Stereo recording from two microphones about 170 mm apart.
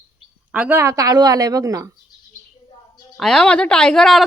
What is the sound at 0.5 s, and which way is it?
A woman's voice, 10° right (ahead or behind).